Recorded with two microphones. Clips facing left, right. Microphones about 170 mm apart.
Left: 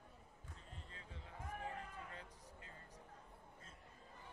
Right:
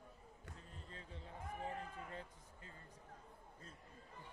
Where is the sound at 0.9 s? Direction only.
35° right (ahead or behind).